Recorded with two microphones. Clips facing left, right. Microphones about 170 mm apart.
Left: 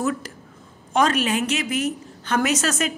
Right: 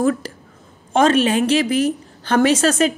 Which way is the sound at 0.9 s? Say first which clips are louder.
Right 5 dB; 25° right (ahead or behind).